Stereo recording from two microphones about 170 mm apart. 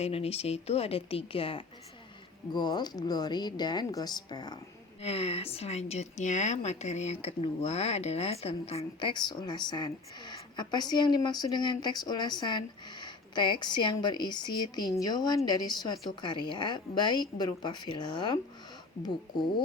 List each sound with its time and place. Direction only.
0.0 s a woman's voice: 35° left (ahead or behind)
5.0 s speech: 35° left (ahead or behind)